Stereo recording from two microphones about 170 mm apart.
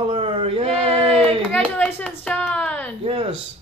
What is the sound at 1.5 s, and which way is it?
A child's voice, 10° left (ahead or behind).